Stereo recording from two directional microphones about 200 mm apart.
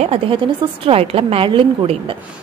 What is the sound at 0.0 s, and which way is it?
A woman's voice, 25° right (ahead or behind).